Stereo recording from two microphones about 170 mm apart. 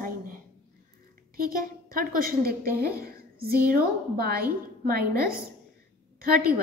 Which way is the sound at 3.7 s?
65° right (ahead or behind).